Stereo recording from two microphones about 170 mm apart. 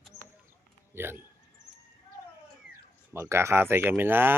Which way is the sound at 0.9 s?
15° right (ahead or behind).